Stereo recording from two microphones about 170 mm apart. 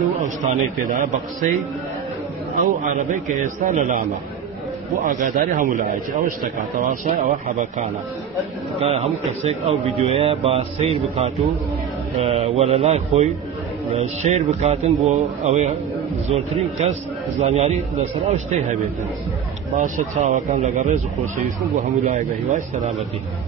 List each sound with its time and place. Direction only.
0.2 s a man's voice: 45° right (ahead or behind)
2.5 s a man's voice: 50° right (ahead or behind)
5.0 s a man's voice: 50° right (ahead or behind)
8.7 s a man's voice: 35° right (ahead or behind)
19.8 s a man's voice: 45° right (ahead or behind)